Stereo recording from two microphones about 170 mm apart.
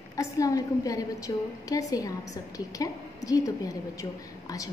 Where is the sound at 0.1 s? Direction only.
20° left (ahead or behind).